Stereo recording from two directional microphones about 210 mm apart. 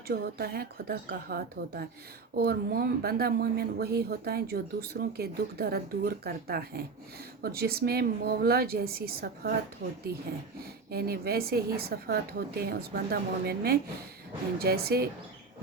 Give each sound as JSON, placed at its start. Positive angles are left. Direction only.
{"t": 0.1, "sound": "speech", "side_deg": -45}
{"t": 10.9, "sound": "speech", "side_deg": -45}